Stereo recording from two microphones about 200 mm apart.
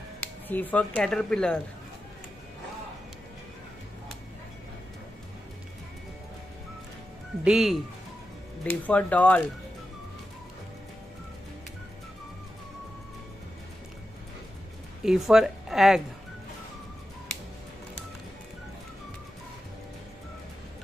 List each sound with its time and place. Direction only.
0.2 s speech: 10° left (ahead or behind)
7.4 s speech: centre (ahead or behind)
15.0 s speech: centre (ahead or behind)